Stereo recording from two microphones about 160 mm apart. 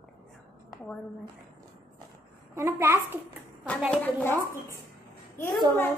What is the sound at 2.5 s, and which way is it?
Speech, 15° right (ahead or behind).